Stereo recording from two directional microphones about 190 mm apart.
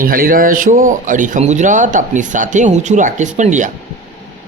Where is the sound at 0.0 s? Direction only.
45° right (ahead or behind).